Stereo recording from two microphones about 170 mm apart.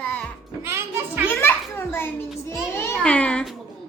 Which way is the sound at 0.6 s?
15° right (ahead or behind).